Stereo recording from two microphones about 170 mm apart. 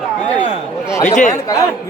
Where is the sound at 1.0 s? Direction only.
45° left (ahead or behind).